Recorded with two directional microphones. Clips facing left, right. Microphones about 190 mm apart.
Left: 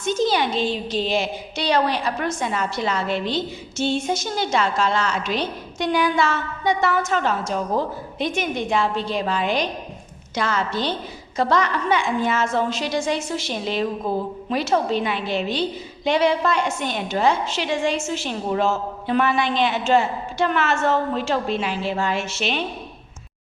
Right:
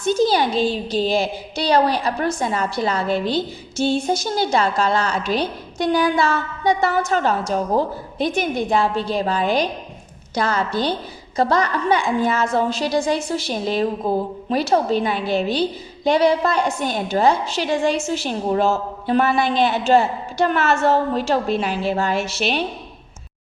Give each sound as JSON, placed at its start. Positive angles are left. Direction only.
{"t": 0.0, "sound": "a woman's voice", "side_deg": -35}